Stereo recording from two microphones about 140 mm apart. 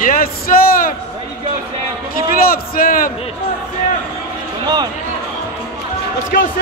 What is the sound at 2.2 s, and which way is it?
Speech, 90° left.